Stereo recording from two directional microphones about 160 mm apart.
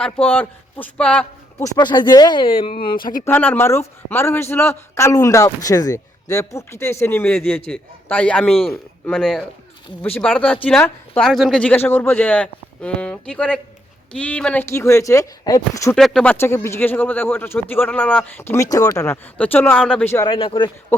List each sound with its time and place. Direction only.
0.3 s a man's voice: 10° left (ahead or behind)
1.6 s speech: 25° left (ahead or behind)
3.2 s speech: 10° left (ahead or behind)
16.0 s speech: centre (ahead or behind)
20.1 s speech: 30° left (ahead or behind)